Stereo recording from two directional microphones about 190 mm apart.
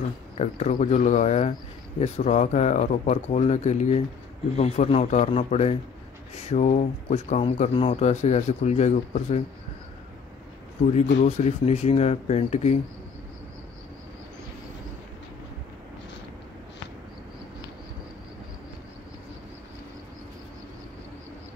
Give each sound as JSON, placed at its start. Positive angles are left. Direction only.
{"t": 0.4, "sound": "speech", "side_deg": 35}
{"t": 11.2, "sound": "speech", "side_deg": 35}